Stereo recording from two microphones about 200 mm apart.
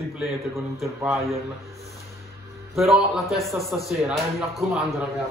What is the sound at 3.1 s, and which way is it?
A man's voice, centre (ahead or behind).